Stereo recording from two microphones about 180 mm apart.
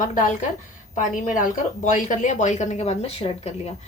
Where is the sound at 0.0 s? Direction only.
45° left (ahead or behind).